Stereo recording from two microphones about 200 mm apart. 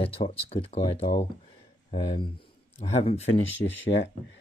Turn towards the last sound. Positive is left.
turn(degrees=70)  # may be behind; listen again after turning